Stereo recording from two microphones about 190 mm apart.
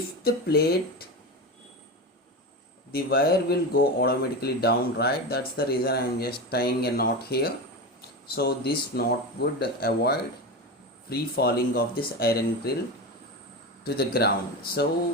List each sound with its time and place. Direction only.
0.3 s speech: 55° left (ahead or behind)
2.9 s speech: 55° left (ahead or behind)
13.8 s speech: 55° left (ahead or behind)